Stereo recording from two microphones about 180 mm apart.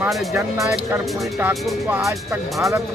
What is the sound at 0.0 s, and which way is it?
Speech, centre (ahead or behind).